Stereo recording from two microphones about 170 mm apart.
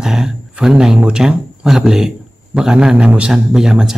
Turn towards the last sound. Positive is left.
turn(degrees=-5)  # may be behind; listen again after turning